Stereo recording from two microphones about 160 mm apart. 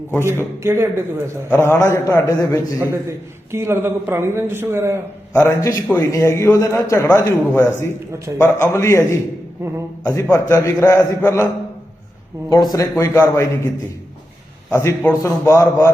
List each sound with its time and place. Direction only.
0.6 s speech: 15° right (ahead or behind)
1.5 s a man's voice: 15° left (ahead or behind)
2.7 s speech: 15° right (ahead or behind)
5.3 s a man's voice: 10° left (ahead or behind)
12.5 s a man's voice: 25° left (ahead or behind)
14.7 s a man's voice: 15° left (ahead or behind)